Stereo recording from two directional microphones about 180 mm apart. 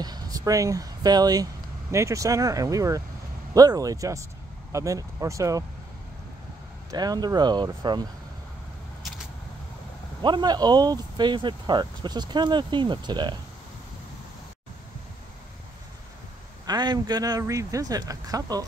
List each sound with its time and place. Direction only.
0.0 s speech: 20° right (ahead or behind)
6.9 s speech: 20° right (ahead or behind)
10.2 s speech: 25° right (ahead or behind)
16.6 s speech: 20° right (ahead or behind)